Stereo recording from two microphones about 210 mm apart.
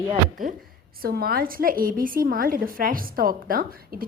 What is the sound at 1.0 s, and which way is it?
A woman's voice, 45° right (ahead or behind).